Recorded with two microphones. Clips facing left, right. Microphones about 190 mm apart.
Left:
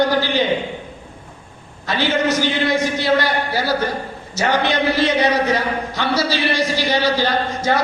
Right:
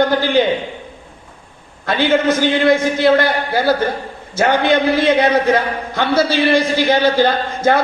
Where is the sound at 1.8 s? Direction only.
55° right (ahead or behind).